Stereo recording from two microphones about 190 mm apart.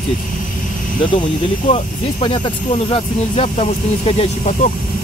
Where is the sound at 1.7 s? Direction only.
25° left (ahead or behind).